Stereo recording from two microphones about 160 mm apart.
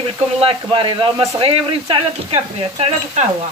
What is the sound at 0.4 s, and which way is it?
Speech, 35° right (ahead or behind).